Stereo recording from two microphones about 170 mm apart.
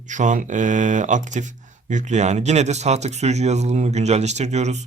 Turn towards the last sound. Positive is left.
turn(degrees=-40)  # may be behind; listen again after turning